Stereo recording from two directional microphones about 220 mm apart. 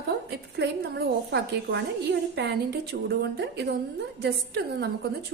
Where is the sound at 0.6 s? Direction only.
50° right (ahead or behind).